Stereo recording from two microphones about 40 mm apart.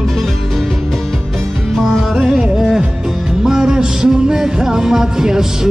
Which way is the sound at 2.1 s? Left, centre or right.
Centre.